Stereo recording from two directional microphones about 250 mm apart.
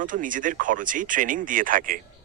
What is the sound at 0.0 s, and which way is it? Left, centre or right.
Speech, right.